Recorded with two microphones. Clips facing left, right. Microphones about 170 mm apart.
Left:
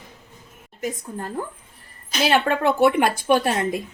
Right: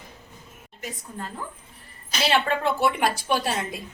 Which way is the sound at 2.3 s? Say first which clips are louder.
Left 4 dB; 50° left (ahead or behind).